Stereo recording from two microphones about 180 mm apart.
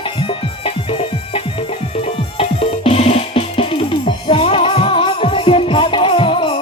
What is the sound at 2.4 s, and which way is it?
Music, 35° left (ahead or behind).